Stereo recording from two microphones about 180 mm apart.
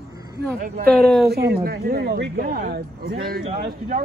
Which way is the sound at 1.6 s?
60° right (ahead or behind).